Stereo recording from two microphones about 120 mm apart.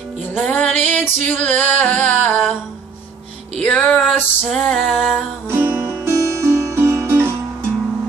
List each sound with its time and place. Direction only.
0.5 s music: 15° left (ahead or behind)
3.5 s music: 10° left (ahead or behind)
4.7 s a sound: centre (ahead or behind)
5.5 s music: 20° right (ahead or behind)